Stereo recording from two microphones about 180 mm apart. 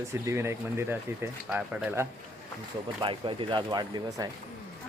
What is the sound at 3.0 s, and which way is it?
Speech, 25° right (ahead or behind).